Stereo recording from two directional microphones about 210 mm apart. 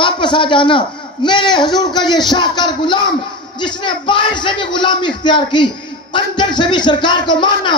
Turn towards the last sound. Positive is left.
turn(degrees=20)  # may be behind; listen again after turning